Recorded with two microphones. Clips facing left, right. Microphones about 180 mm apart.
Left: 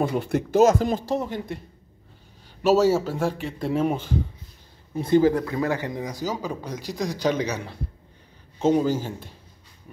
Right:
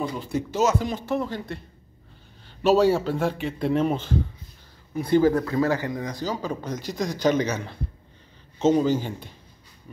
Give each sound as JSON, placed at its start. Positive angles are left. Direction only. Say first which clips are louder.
{"t": 0.0, "sound": "speech", "louder": "left 4 dB", "side_deg": 60}
{"t": 1.2, "sound": "speech", "louder": "left 1 dB", "side_deg": 20}
{"t": 2.6, "sound": "speech", "louder": "even", "side_deg": 5}
{"t": 4.9, "sound": "speech", "louder": "left 1 dB", "side_deg": 20}
{"t": 6.4, "sound": "a man's voice", "louder": "right 1 dB", "side_deg": 5}
{"t": 8.5, "sound": "speech", "louder": "right 1 dB", "side_deg": 10}